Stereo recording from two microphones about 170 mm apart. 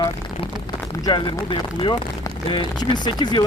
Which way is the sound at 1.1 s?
30° left (ahead or behind).